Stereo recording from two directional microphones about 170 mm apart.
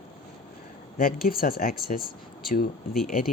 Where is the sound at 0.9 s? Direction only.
60° left (ahead or behind).